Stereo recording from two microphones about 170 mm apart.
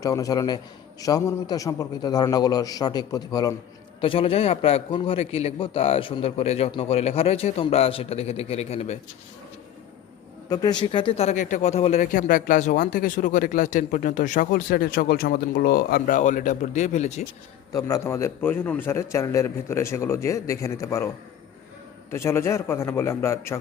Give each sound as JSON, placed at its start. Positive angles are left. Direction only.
{"t": 0.0, "sound": "a man's voice", "side_deg": 20}
{"t": 10.5, "sound": "speech", "side_deg": 25}
{"t": 17.7, "sound": "a man's voice", "side_deg": 20}
{"t": 22.1, "sound": "a man's voice", "side_deg": 15}